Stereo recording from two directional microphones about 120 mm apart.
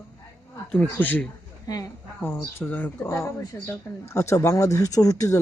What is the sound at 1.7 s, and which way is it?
Speech, 30° left (ahead or behind).